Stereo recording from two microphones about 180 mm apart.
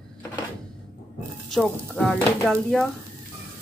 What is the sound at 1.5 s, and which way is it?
Speech, centre (ahead or behind).